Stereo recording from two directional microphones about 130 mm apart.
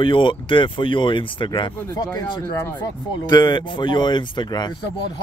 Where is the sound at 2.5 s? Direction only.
20° left (ahead or behind).